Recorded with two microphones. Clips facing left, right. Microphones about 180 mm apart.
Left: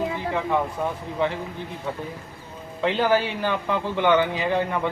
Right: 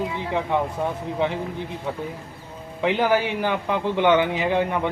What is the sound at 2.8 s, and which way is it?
A man's voice, 15° right (ahead or behind).